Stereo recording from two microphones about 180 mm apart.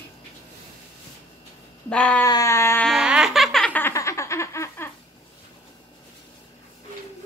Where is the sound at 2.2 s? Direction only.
20° left (ahead or behind).